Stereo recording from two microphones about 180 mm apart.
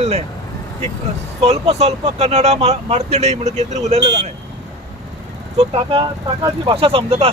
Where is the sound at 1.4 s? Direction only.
35° right (ahead or behind).